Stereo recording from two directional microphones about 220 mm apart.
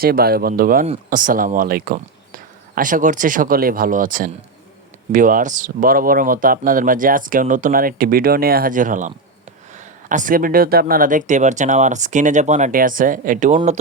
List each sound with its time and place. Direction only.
0.0 s speech: 45° right (ahead or behind)